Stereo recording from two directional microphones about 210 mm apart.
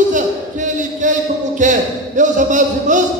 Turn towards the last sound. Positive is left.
turn(degrees=-35)  # may be behind; listen again after turning